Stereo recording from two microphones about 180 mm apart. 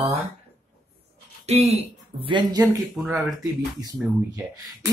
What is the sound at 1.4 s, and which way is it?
Speech, 35° right (ahead or behind).